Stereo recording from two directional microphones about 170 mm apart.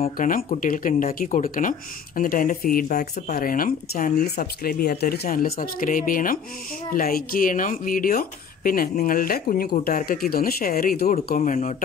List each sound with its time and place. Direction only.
0.0 s speech: 50° left (ahead or behind)